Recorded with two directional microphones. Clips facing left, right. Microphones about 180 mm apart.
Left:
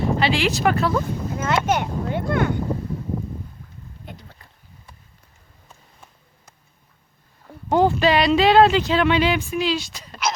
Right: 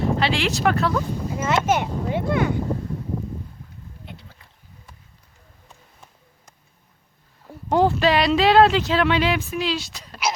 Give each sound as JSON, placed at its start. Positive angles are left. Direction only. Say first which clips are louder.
{"t": 0.0, "sound": "speech", "louder": "left 1 dB", "side_deg": 0}
{"t": 4.1, "sound": "a sound", "louder": "left 3 dB", "side_deg": 45}
{"t": 7.4, "sound": "speech", "louder": "left 1 dB", "side_deg": 0}